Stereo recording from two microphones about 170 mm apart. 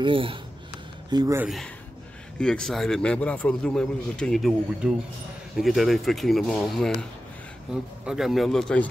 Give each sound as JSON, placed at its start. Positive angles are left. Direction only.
{"t": 0.0, "sound": "speech", "side_deg": -30}
{"t": 1.1, "sound": "speech", "side_deg": -15}
{"t": 2.3, "sound": "a man's voice", "side_deg": 5}